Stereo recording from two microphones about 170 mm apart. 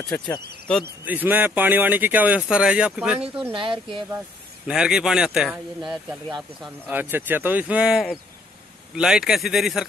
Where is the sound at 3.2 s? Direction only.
35° right (ahead or behind).